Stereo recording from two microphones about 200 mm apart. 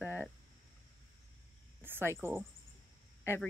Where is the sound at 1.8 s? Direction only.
10° right (ahead or behind).